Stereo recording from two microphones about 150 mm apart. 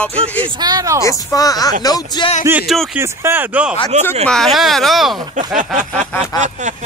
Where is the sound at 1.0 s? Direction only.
25° left (ahead or behind).